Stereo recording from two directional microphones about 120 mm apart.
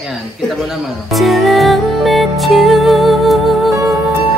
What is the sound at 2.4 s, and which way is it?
Music, centre (ahead or behind).